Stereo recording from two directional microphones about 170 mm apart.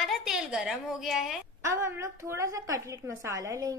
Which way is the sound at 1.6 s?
15° right (ahead or behind).